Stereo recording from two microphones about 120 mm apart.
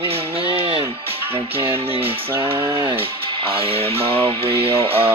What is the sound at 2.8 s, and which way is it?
Speech, 50° right (ahead or behind).